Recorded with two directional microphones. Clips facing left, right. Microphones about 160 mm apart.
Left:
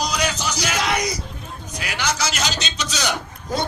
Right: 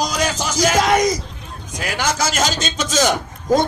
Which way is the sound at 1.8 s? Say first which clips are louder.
Right 4 dB; 45° right (ahead or behind).